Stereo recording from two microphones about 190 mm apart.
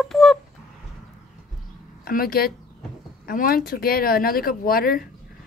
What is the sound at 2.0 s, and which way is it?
A woman's voice, 50° left (ahead or behind).